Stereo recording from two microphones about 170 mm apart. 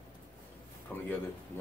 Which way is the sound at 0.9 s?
5° left (ahead or behind).